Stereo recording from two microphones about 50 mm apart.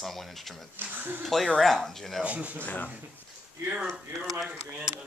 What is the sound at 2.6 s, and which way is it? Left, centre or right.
Speech, left.